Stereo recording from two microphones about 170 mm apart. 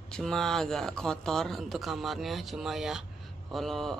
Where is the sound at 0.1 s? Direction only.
5° left (ahead or behind).